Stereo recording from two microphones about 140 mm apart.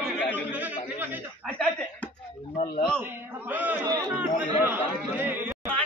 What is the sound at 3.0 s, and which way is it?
A man's voice, 10° right (ahead or behind).